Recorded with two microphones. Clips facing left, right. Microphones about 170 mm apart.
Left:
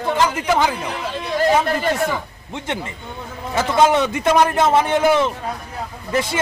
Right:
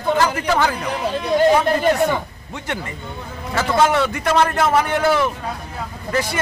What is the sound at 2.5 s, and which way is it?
Speech, 20° left (ahead or behind).